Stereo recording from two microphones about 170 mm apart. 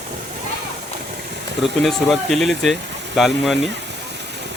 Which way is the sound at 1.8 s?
Centre (ahead or behind).